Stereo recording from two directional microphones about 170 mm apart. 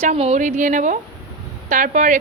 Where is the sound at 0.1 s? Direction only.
45° right (ahead or behind).